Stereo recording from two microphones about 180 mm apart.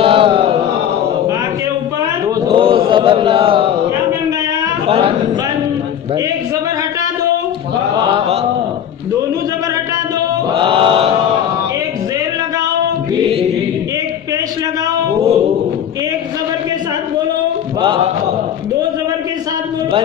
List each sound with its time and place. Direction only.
0.0 s chant: 30° right (ahead or behind)
2.4 s chant: 30° right (ahead or behind)
4.8 s a sound: 35° right (ahead or behind)
10.5 s chant: 30° right (ahead or behind)